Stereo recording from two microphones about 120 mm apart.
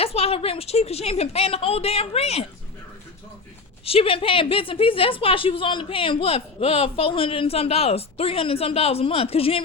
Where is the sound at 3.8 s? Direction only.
50° left (ahead or behind).